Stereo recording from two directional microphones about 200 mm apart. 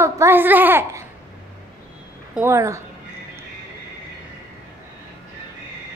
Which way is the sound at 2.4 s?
15° right (ahead or behind).